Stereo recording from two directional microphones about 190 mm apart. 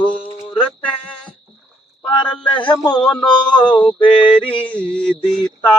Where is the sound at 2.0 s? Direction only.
25° left (ahead or behind).